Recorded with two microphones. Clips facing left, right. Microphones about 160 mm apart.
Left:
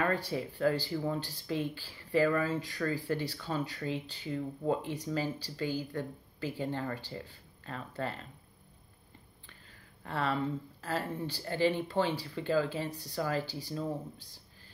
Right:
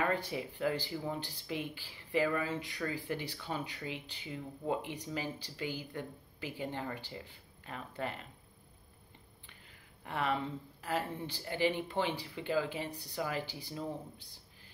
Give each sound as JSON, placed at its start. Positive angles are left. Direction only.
{"t": 0.0, "sound": "speech", "side_deg": -15}
{"t": 9.5, "sound": "a sound", "side_deg": -15}
{"t": 10.8, "sound": "speech", "side_deg": -15}